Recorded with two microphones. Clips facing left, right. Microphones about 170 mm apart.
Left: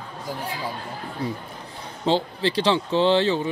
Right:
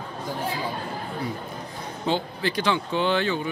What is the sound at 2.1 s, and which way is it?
Speech, 30° left (ahead or behind).